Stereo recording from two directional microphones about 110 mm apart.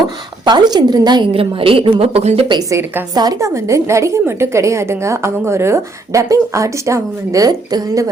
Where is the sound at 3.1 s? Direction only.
35° right (ahead or behind).